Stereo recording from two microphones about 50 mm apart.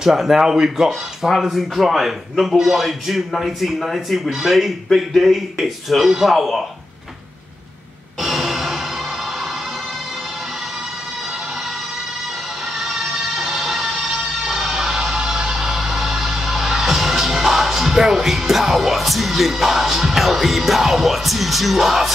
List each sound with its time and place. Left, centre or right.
0.0 s speech: centre
8.2 s a sound: centre
12.7 s music: centre